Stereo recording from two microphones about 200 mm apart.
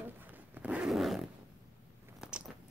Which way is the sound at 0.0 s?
10° right (ahead or behind).